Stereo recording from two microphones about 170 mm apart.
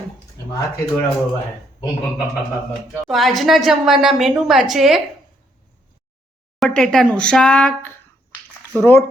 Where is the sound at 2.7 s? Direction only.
Centre (ahead or behind).